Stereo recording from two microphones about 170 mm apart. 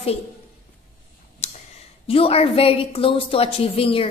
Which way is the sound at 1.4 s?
40° left (ahead or behind).